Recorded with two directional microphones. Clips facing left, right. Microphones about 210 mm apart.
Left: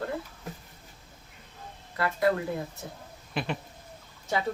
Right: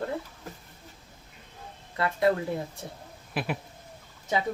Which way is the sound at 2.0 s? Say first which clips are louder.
Right 1 dB; 25° right (ahead or behind).